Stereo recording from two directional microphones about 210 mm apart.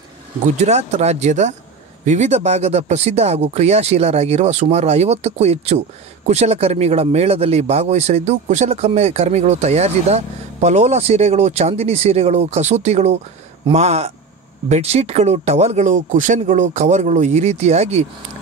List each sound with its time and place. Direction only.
0.6 s speech: 30° right (ahead or behind)